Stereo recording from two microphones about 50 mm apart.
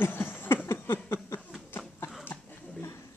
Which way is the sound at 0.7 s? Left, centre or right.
Left.